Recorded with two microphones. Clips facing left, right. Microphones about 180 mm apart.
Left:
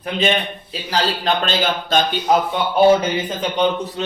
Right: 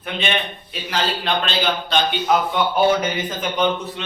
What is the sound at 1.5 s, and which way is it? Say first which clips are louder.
Speech: left 2 dB; 45° left (ahead or behind).